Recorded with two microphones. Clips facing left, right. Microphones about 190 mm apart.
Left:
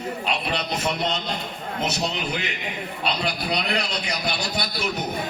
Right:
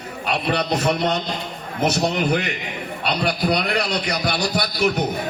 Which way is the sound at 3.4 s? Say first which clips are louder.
Right 6 dB; 60° right (ahead or behind).